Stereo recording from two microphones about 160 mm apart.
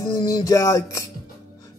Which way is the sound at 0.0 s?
20° left (ahead or behind).